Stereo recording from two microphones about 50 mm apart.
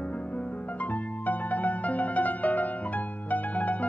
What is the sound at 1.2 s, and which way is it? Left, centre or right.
Music, left.